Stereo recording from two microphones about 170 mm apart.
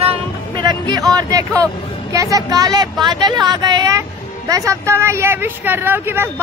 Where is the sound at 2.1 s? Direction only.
20° right (ahead or behind).